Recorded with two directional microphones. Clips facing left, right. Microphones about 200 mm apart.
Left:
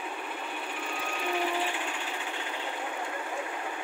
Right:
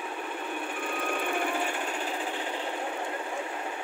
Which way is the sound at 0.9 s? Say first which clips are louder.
Right 2 dB; 55° right (ahead or behind).